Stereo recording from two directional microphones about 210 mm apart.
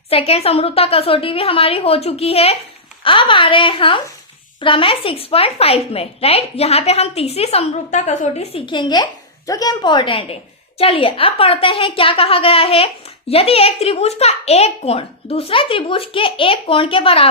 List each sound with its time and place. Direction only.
0.1 s speech: 30° left (ahead or behind)